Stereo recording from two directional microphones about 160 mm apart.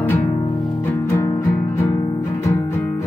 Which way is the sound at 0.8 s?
15° left (ahead or behind).